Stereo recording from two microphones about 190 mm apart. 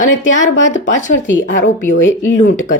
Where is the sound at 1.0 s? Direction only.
40° left (ahead or behind).